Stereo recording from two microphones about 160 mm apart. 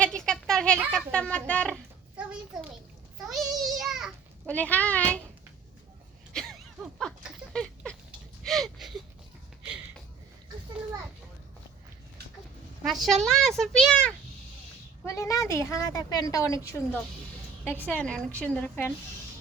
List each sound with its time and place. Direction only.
0.0 s a sound: 5° left (ahead or behind)
0.9 s a child's voice: 5° left (ahead or behind)
3.2 s a child's voice: centre (ahead or behind)
4.4 s a child's voice: 10° left (ahead or behind)
6.3 s a sound: centre (ahead or behind)
12.8 s a woman's voice: centre (ahead or behind)
15.0 s a woman's voice: 20° left (ahead or behind)